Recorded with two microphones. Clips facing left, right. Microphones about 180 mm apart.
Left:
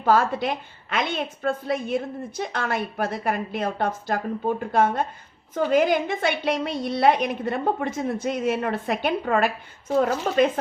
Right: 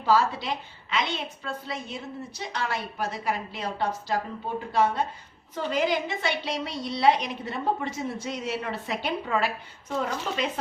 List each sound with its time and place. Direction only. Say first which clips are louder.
0.0 s a woman's voice: left 3 dB; 55° left (ahead or behind)